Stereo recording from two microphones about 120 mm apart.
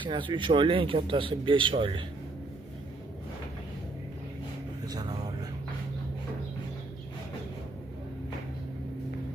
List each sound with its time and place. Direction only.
0.0 s speech: 40° right (ahead or behind)
4.9 s speech: 35° right (ahead or behind)